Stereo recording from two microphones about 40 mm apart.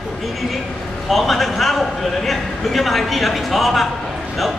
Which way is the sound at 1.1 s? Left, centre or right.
Centre.